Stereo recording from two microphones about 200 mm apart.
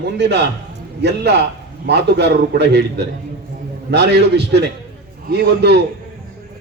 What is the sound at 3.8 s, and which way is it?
A man's voice, 55° right (ahead or behind).